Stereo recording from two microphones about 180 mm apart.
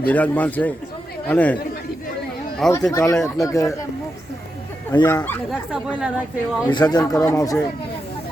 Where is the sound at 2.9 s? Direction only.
15° left (ahead or behind).